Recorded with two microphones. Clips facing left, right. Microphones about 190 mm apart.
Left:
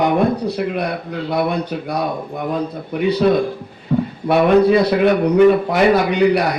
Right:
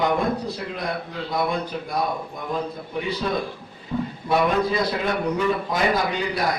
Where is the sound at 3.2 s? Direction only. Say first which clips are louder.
Left 12 dB; 65° left (ahead or behind).